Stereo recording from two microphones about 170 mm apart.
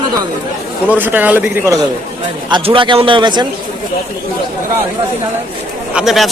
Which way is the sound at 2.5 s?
30° right (ahead or behind).